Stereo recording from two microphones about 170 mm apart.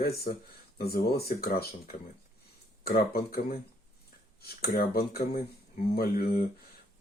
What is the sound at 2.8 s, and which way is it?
Speech, 60° left (ahead or behind).